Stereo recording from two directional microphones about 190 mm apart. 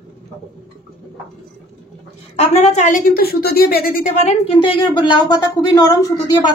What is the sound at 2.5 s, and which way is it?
A woman's voice, 35° left (ahead or behind).